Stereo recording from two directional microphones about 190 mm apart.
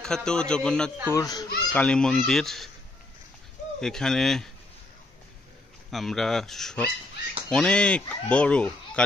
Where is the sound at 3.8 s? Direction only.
5° left (ahead or behind).